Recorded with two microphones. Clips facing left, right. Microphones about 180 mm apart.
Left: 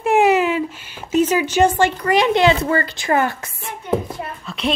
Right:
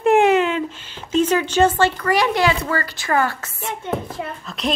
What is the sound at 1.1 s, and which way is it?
Speech, 10° left (ahead or behind).